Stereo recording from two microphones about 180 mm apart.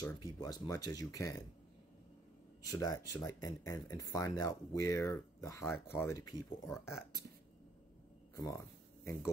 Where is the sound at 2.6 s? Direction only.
20° left (ahead or behind).